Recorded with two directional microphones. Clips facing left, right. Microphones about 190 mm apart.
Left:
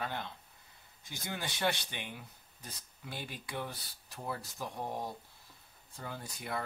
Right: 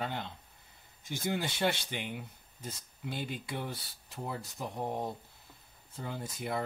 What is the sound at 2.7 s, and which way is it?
Speech, 25° right (ahead or behind).